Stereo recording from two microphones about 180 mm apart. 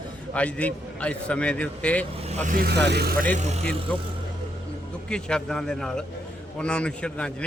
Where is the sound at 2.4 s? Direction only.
60° right (ahead or behind).